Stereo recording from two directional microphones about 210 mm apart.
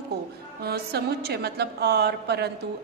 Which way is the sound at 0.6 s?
50° right (ahead or behind).